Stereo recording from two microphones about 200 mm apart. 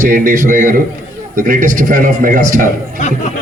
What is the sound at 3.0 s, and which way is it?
Speech, 35° left (ahead or behind).